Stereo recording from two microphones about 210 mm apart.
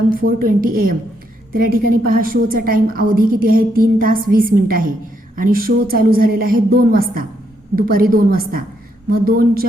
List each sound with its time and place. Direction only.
0.1 s a woman's voice: 40° right (ahead or behind)